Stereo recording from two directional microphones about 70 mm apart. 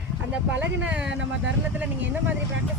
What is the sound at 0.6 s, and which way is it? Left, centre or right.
Speech, right.